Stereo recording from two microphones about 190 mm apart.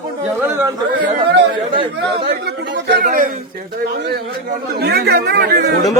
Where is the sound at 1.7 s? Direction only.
25° right (ahead or behind).